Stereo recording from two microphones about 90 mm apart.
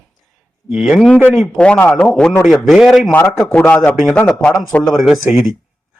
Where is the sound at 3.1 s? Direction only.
20° left (ahead or behind).